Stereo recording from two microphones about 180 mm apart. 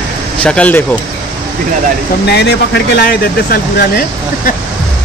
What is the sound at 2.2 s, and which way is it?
Speech, 65° left (ahead or behind).